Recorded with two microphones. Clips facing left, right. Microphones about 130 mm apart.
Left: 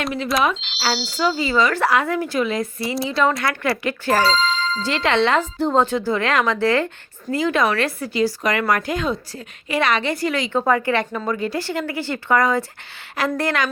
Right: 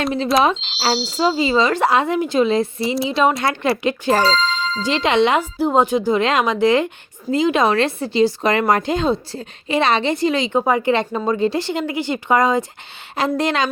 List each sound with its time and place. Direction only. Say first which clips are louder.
0.0 s speech: right 4 dB; 30° right (ahead or behind)
0.9 s speech: right 5 dB; centre (ahead or behind)
1.2 s speech: right 2 dB; 25° right (ahead or behind)